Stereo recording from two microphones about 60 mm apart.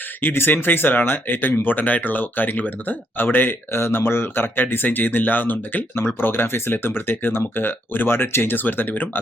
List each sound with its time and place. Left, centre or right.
0.2 s speech: left